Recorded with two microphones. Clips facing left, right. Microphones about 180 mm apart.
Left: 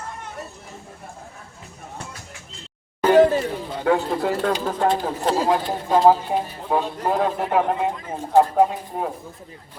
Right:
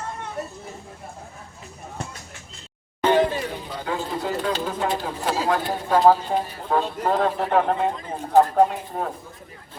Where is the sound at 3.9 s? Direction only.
60° left (ahead or behind).